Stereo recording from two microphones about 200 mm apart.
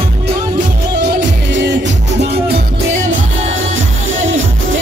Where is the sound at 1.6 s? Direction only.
65° right (ahead or behind).